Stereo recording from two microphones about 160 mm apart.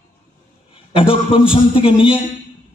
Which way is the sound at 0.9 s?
35° left (ahead or behind).